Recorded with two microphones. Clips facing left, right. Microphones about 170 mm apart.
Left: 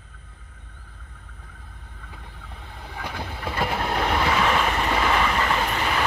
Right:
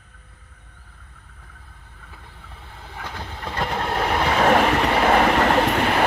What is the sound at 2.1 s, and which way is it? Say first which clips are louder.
Vehicle: left 1 dB; 20° left (ahead or behind).